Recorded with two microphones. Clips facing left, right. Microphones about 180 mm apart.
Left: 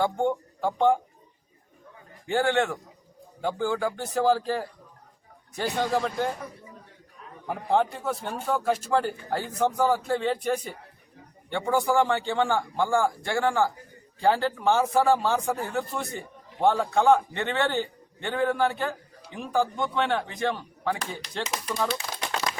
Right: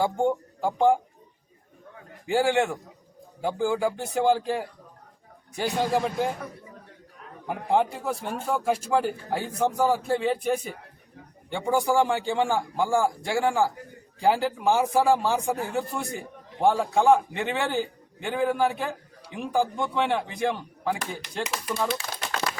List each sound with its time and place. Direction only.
0.0 s speech: 10° right (ahead or behind)
2.2 s a man's voice: 10° right (ahead or behind)
5.6 s speech: centre (ahead or behind)
7.4 s a man's voice: 10° right (ahead or behind)